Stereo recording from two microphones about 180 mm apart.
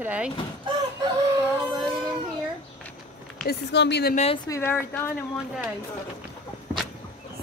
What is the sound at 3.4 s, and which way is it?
Speech, 70° left (ahead or behind).